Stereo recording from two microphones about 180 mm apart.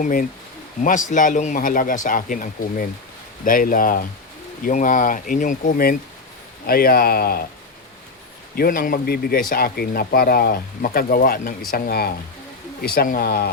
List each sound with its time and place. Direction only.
0.0 s speech: 50° left (ahead or behind)
8.5 s speech: 55° left (ahead or behind)